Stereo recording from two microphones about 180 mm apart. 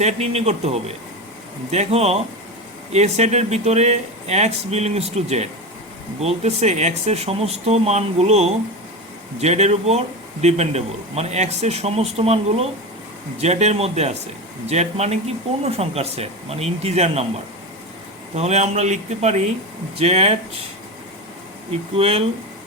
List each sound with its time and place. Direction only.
0.0 s speech: 35° right (ahead or behind)
18.3 s speech: 35° right (ahead or behind)
21.9 s speech: 35° right (ahead or behind)